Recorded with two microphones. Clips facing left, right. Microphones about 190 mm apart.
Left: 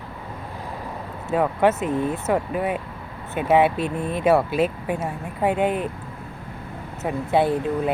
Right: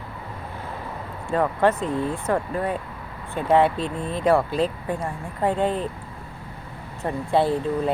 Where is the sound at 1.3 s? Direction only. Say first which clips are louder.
Left 1 dB; 5° left (ahead or behind).